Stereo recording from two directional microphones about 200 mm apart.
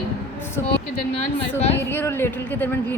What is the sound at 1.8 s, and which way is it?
Speech, 10° left (ahead or behind).